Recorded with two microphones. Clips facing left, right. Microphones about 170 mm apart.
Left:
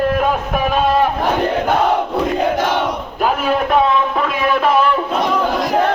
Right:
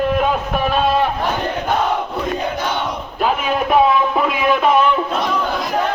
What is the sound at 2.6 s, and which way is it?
Crowd, 90° left.